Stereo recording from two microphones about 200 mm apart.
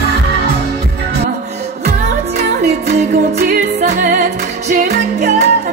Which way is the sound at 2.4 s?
50° right (ahead or behind).